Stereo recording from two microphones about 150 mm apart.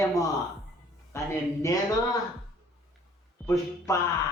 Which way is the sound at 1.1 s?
20° left (ahead or behind).